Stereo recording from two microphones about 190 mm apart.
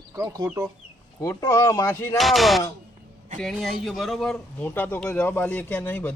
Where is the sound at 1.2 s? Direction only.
15° left (ahead or behind).